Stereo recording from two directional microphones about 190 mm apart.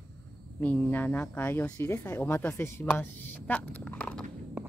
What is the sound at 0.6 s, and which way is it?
Speech, 10° left (ahead or behind).